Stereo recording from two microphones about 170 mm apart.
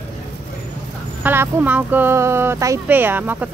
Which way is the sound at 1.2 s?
10° right (ahead or behind).